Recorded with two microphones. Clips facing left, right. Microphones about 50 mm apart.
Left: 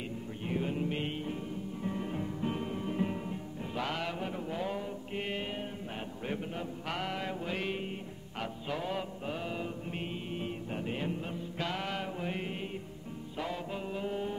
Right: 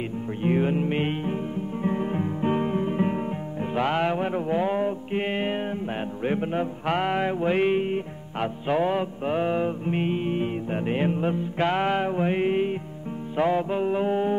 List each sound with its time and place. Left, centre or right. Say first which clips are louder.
0.4 s music: right 11 dB; right